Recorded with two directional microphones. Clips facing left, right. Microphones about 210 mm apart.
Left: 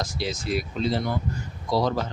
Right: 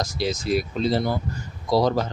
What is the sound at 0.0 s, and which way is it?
A man's voice, 40° right (ahead or behind).